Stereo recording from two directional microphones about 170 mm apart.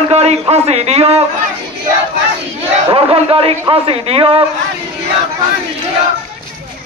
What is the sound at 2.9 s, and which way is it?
A man's voice, 35° right (ahead or behind).